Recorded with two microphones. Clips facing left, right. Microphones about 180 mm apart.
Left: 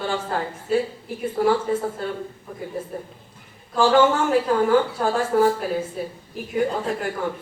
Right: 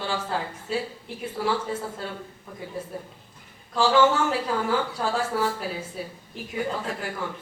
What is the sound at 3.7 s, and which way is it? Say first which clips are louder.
A woman's voice: left 3 dB; 50° left (ahead or behind).